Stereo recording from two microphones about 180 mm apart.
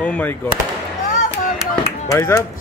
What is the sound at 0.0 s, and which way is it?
Speech, 10° left (ahead or behind).